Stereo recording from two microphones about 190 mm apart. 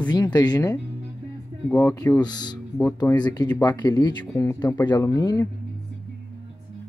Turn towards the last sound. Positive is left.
turn(degrees=20)  # may be behind; listen again after turning